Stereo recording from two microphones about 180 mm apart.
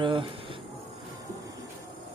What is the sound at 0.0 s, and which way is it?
Speech, 30° right (ahead or behind).